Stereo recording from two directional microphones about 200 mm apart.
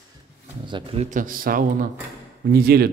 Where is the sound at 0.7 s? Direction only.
25° right (ahead or behind).